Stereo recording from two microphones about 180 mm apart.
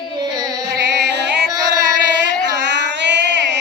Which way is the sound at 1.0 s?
75° right (ahead or behind).